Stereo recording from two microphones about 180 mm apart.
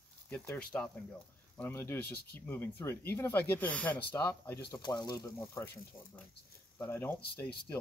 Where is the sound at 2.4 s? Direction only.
10° left (ahead or behind).